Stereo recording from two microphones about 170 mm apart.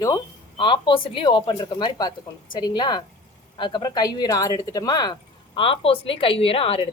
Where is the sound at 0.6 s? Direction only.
30° left (ahead or behind).